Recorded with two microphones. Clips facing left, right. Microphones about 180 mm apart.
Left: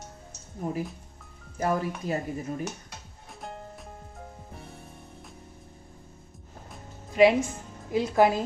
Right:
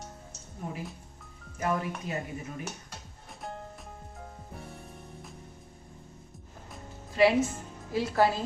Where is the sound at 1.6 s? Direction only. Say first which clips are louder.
Left 3 dB; 35° left (ahead or behind).